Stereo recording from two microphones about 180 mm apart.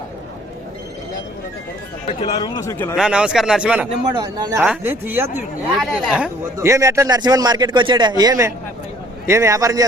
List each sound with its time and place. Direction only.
2.4 s a man's voice: 20° left (ahead or behind)
2.9 s speech: 5° right (ahead or behind)
4.1 s speech: 25° right (ahead or behind)
4.5 s speech: 10° right (ahead or behind)